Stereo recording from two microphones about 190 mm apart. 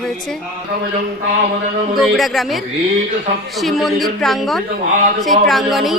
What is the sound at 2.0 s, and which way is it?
Speech, centre (ahead or behind).